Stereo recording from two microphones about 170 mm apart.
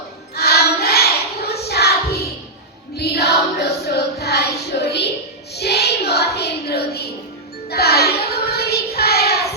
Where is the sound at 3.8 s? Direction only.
70° left (ahead or behind).